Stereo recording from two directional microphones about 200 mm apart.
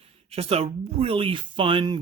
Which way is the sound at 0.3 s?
30° right (ahead or behind).